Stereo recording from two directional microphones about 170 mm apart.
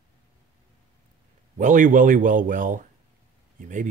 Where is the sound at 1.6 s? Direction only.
50° right (ahead or behind).